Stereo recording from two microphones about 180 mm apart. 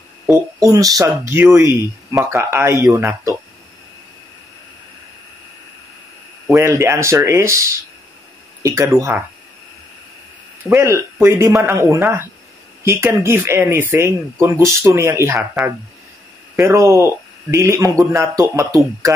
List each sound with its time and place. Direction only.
0.3 s speech: 20° right (ahead or behind)
6.5 s speech: 15° right (ahead or behind)
8.6 s speech: 15° right (ahead or behind)
10.7 s speech: 15° right (ahead or behind)
16.5 s speech: 15° right (ahead or behind)